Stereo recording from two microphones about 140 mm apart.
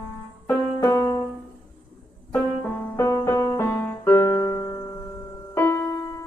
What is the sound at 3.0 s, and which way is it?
Music, 20° left (ahead or behind).